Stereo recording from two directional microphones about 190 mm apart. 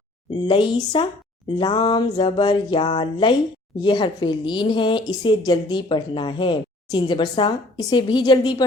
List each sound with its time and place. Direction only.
0.4 s a woman's voice: 25° left (ahead or behind)